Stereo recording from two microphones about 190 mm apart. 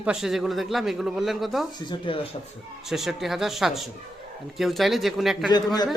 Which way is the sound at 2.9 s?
Centre (ahead or behind).